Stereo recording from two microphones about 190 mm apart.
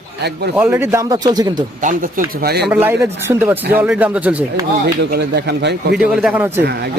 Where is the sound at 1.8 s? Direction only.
50° right (ahead or behind).